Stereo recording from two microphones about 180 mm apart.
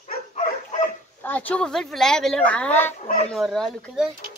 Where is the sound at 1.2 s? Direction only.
10° left (ahead or behind).